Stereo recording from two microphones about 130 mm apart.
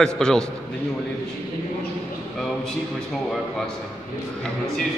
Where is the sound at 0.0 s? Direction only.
5° left (ahead or behind).